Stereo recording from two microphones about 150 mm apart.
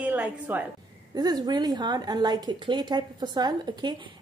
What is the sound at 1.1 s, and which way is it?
A woman's voice, 25° right (ahead or behind).